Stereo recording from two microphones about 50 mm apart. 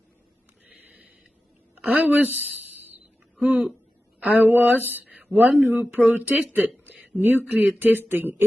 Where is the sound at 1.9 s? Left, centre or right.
Right.